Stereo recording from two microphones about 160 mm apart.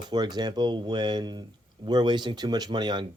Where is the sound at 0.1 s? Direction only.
25° right (ahead or behind).